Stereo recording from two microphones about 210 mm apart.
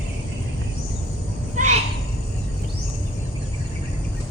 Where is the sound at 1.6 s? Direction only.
35° right (ahead or behind).